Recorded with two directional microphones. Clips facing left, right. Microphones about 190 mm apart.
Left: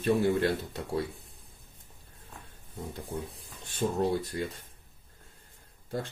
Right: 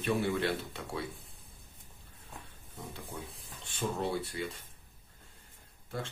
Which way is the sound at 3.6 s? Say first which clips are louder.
Left 6 dB; 40° left (ahead or behind).